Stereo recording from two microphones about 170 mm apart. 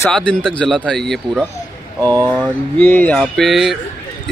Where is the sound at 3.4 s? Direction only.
Centre (ahead or behind).